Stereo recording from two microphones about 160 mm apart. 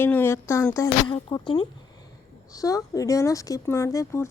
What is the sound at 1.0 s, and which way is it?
Speech, 30° left (ahead or behind).